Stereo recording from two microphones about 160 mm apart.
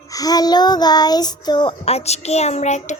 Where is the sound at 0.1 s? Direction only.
25° left (ahead or behind).